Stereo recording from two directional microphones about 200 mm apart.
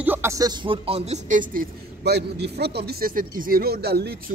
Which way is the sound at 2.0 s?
55° right (ahead or behind).